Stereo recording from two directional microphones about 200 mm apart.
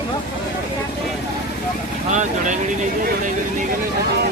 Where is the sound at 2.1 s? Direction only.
40° right (ahead or behind).